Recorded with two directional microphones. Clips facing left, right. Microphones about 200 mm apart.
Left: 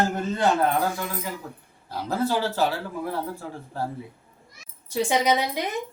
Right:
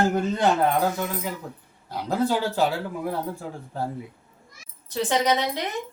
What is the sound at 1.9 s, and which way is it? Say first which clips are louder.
Speech: right 1 dB; 15° right (ahead or behind).